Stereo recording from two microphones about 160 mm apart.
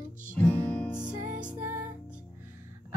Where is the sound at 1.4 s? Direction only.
10° right (ahead or behind).